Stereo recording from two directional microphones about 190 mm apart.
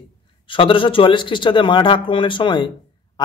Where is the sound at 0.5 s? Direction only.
25° left (ahead or behind).